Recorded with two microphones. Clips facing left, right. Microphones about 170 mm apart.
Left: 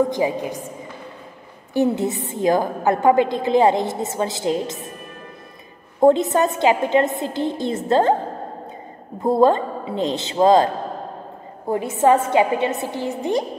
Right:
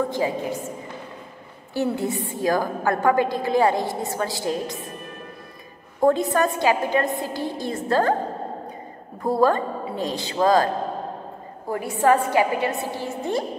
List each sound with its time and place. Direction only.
0.1 s a woman's voice: 20° left (ahead or behind)
1.7 s a woman's voice: 20° left (ahead or behind)
5.9 s a woman's voice: 25° left (ahead or behind)
9.2 s a woman's voice: 25° left (ahead or behind)
11.7 s a woman's voice: 20° left (ahead or behind)